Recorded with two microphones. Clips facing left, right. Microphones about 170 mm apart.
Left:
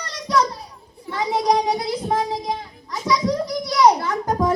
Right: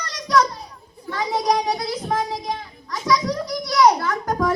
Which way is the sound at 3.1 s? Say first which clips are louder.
Left 1 dB; 25° left (ahead or behind).